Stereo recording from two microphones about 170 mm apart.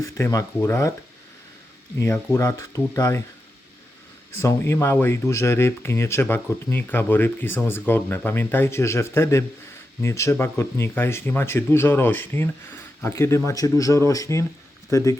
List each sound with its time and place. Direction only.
0.0 s speech: 20° left (ahead or behind)
2.0 s speech: 15° left (ahead or behind)
4.4 s speech: 15° left (ahead or behind)